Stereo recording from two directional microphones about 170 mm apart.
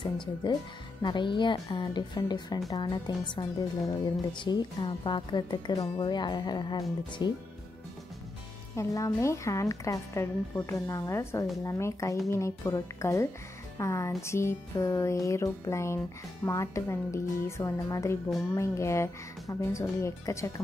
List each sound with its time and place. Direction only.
0.0 s speech: 25° left (ahead or behind)
8.7 s a woman's voice: 20° left (ahead or behind)